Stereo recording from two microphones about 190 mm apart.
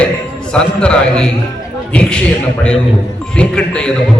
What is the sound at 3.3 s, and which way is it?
Speech, 5° left (ahead or behind).